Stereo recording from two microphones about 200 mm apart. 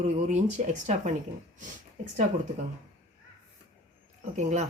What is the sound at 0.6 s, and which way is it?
Speech, 40° right (ahead or behind).